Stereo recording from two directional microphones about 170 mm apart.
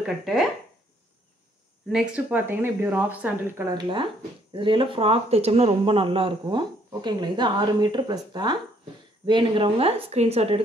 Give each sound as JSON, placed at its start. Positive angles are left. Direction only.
{"t": 0.0, "sound": "speech", "side_deg": 0}
{"t": 1.9, "sound": "speech", "side_deg": -5}
{"t": 3.7, "sound": "speech", "side_deg": -30}